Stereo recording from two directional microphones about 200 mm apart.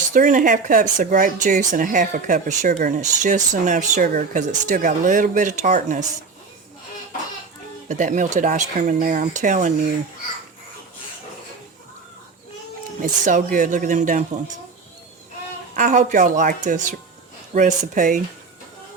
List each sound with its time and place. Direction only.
0.1 s speech: 40° right (ahead or behind)
7.9 s speech: 40° right (ahead or behind)
13.0 s speech: 40° right (ahead or behind)
15.7 s speech: 40° right (ahead or behind)